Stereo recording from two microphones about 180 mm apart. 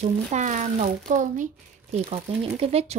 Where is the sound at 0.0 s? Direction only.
40° right (ahead or behind).